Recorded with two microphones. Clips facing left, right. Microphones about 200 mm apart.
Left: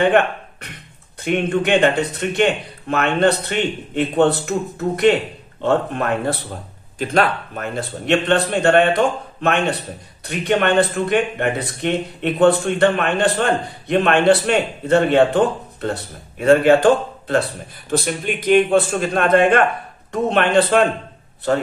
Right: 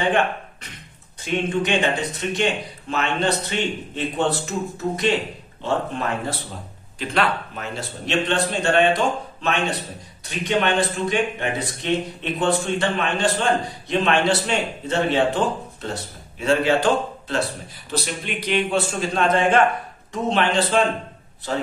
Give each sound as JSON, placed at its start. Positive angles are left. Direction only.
{"t": 1.2, "sound": "speech", "side_deg": 60}
{"t": 7.0, "sound": "speech", "side_deg": 50}